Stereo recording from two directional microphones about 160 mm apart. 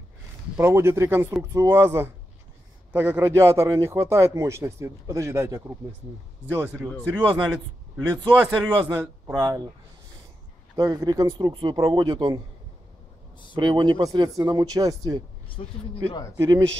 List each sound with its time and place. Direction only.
0.6 s a man's voice: 15° right (ahead or behind)
9.3 s speech: 30° right (ahead or behind)
10.8 s speech: 20° right (ahead or behind)
13.6 s speech: 30° right (ahead or behind)
16.3 s speech: 20° right (ahead or behind)